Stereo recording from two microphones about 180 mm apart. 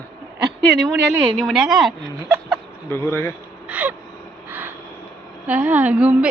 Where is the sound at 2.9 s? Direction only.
15° left (ahead or behind).